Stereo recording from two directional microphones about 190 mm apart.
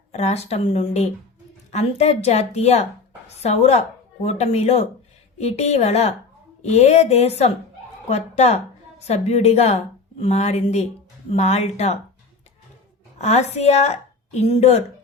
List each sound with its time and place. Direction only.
0.1 s a woman's voice: 35° left (ahead or behind)
13.1 s a woman's voice: 35° left (ahead or behind)